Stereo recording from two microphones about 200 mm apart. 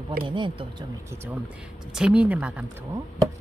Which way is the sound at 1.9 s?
5° right (ahead or behind).